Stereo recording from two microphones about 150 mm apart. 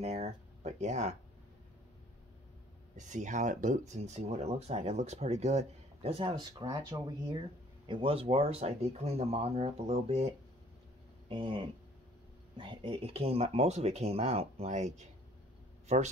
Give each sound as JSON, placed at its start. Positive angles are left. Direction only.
{"t": 0.0, "sound": "speech", "side_deg": -45}
{"t": 3.0, "sound": "speech", "side_deg": -55}